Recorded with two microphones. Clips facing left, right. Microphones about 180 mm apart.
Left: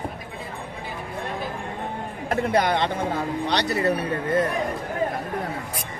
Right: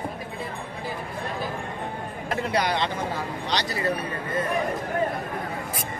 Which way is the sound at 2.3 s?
50° left (ahead or behind).